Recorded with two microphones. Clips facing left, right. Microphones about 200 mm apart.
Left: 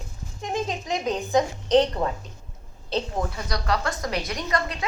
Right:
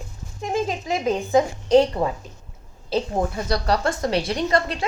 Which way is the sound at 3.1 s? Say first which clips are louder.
Right 5 dB; 30° right (ahead or behind).